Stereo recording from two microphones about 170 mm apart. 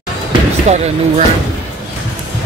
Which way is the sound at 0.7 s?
40° right (ahead or behind).